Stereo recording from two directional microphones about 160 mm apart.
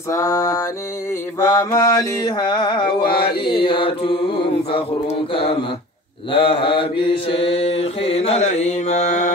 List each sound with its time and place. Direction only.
0.1 s mantra: 20° left (ahead or behind)
5.3 s mantra: 35° left (ahead or behind)